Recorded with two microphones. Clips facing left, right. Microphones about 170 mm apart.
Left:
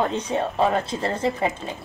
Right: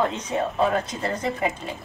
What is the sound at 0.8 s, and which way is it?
Speech, 30° left (ahead or behind).